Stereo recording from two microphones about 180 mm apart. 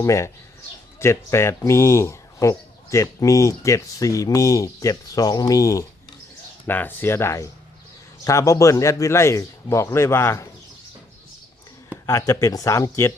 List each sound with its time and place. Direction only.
0.0 s speech: 15° left (ahead or behind)
12.0 s speech: 15° left (ahead or behind)